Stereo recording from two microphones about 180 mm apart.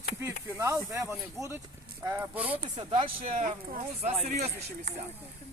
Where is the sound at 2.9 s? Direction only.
45° right (ahead or behind).